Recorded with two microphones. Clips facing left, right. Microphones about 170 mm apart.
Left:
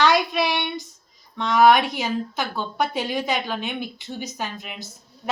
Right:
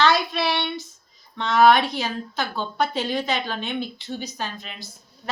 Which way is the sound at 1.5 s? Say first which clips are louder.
Even; 15° left (ahead or behind).